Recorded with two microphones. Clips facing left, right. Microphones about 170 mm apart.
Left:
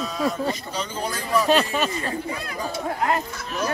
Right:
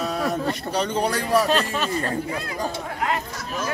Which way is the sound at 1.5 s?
5° left (ahead or behind).